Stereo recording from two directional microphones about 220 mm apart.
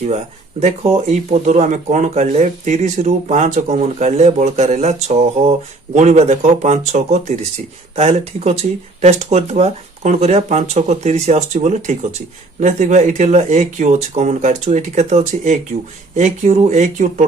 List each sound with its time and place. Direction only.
0.6 s speech: 25° right (ahead or behind)